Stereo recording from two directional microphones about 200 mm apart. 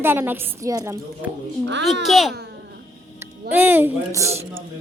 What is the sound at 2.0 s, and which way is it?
Speech, centre (ahead or behind).